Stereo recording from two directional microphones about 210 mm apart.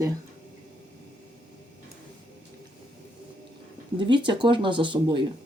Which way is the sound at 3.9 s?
20° right (ahead or behind).